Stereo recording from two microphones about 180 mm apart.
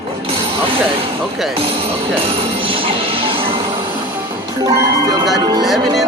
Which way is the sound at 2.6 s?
30° right (ahead or behind).